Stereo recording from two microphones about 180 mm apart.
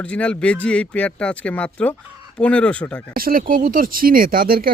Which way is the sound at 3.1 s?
55° right (ahead or behind).